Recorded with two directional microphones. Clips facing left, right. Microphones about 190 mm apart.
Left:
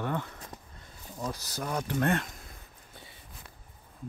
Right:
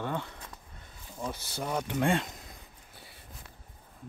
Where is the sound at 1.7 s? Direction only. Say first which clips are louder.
Even; 10° right (ahead or behind).